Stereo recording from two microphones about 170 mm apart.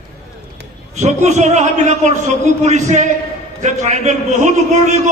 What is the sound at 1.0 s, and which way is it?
A man's voice, 45° right (ahead or behind).